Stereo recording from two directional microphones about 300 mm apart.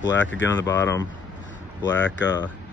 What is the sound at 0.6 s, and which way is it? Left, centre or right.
Speech, centre.